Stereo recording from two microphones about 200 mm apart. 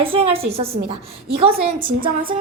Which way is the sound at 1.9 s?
45° right (ahead or behind).